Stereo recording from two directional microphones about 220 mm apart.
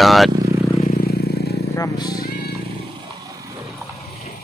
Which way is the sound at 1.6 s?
15° left (ahead or behind).